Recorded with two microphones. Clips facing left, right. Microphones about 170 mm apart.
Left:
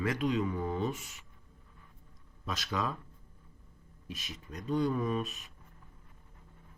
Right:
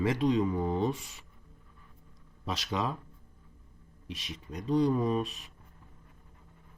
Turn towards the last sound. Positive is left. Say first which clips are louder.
# right 4 dB
turn(degrees=-35)  # may be behind; listen again after turning